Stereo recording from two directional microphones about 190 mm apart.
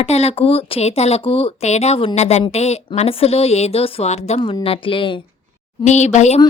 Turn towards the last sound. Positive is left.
turn(degrees=35)  # may be behind; listen again after turning